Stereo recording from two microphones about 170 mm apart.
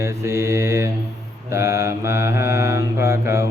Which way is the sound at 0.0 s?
15° right (ahead or behind).